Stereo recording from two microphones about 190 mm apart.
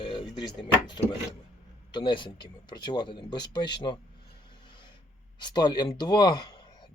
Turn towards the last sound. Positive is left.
turn(degrees=25)  # may be behind; listen again after turning